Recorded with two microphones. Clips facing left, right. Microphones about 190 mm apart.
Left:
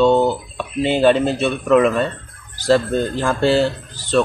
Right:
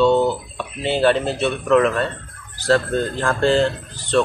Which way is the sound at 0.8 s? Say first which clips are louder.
Left 3 dB; 15° left (ahead or behind).